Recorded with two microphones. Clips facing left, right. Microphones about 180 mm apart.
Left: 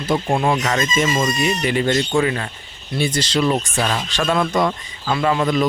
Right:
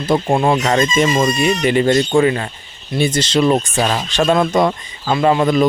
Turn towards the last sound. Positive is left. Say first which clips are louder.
# right 4 dB
turn(degrees=-30)  # may be behind; listen again after turning